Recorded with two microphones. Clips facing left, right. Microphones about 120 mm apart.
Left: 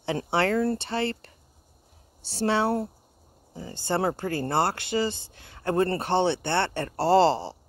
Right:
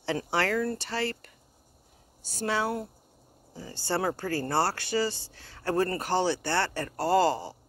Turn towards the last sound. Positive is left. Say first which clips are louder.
# left 4 dB
turn(degrees=30)  # may be behind; listen again after turning